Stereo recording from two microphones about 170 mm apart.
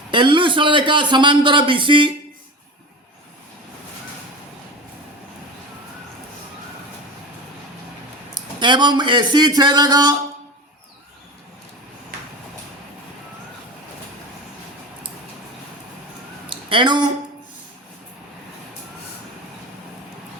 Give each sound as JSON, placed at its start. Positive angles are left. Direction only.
{"t": 0.1, "sound": "a man's voice", "side_deg": -30}
{"t": 8.5, "sound": "a man's voice", "side_deg": -25}
{"t": 16.5, "sound": "a sound", "side_deg": -30}